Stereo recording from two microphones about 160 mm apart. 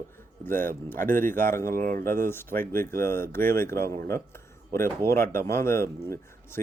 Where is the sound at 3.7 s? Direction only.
70° right (ahead or behind).